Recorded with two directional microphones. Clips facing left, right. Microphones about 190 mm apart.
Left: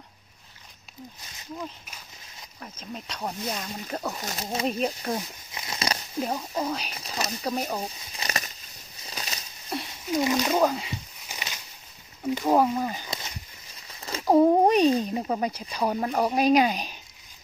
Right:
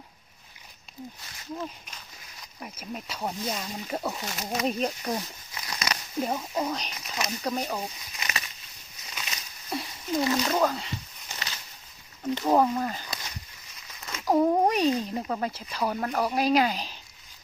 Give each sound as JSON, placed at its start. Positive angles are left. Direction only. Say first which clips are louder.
{"t": 2.6, "sound": "speech", "louder": "right 1 dB", "side_deg": -10}
{"t": 4.2, "sound": "speech", "louder": "even", "side_deg": 30}
{"t": 4.6, "sound": "speech", "louder": "left 1 dB", "side_deg": 0}
{"t": 5.5, "sound": "a sound", "louder": "left 3 dB", "side_deg": 25}
{"t": 6.2, "sound": "speech", "louder": "even", "side_deg": 0}
{"t": 6.9, "sound": "speech", "louder": "left 1 dB", "side_deg": 30}
{"t": 7.4, "sound": "speech", "louder": "left 1 dB", "side_deg": 10}
{"t": 8.2, "sound": "a sound", "louder": "left 3 dB", "side_deg": 40}
{"t": 9.7, "sound": "patter", "louder": "even", "side_deg": 0}
{"t": 10.1, "sound": "a sound", "louder": "left 2 dB", "side_deg": 10}
{"t": 12.2, "sound": "speech", "louder": "left 1 dB", "side_deg": 10}
{"t": 14.0, "sound": "speech", "louder": "left 4 dB", "side_deg": 30}